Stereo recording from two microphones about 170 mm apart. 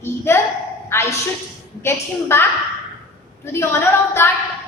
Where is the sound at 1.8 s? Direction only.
15° left (ahead or behind).